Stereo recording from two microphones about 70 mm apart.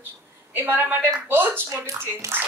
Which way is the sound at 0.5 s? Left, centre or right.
Right.